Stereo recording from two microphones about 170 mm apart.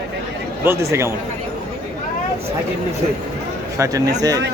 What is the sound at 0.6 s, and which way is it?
Speech, 15° right (ahead or behind).